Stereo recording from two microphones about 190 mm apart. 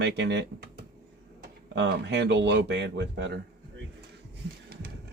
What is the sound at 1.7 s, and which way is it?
A man's voice, 65° right (ahead or behind).